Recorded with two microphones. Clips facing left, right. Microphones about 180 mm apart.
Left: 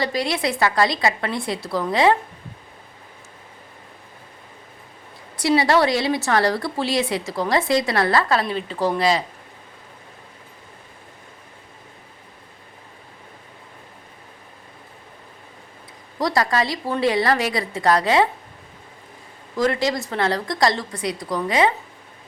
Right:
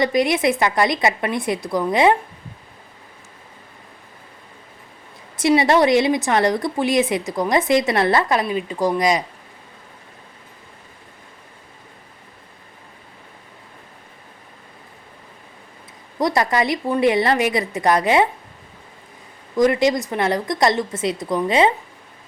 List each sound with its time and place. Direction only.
0.0 s a woman's voice: 20° right (ahead or behind)
5.4 s a woman's voice: 20° right (ahead or behind)
16.1 s a woman's voice: 20° right (ahead or behind)
19.5 s a woman's voice: 20° right (ahead or behind)